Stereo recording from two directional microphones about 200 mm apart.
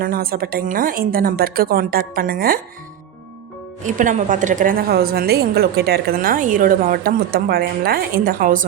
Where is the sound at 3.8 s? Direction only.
40° right (ahead or behind).